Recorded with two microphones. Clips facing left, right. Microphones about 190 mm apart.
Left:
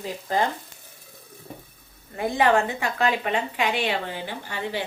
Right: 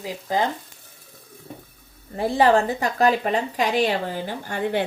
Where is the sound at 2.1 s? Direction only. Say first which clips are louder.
Right 3 dB; 35° right (ahead or behind).